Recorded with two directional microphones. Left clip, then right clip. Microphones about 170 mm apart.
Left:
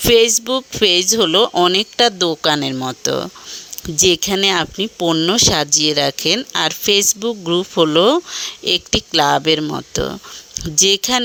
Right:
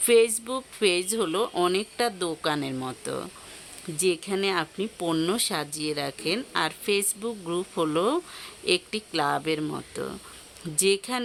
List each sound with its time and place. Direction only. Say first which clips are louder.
0.0 s speech: left 8 dB; 40° left (ahead or behind)